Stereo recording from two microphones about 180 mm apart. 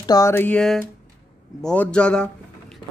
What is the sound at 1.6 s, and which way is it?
A man's voice, 5° left (ahead or behind).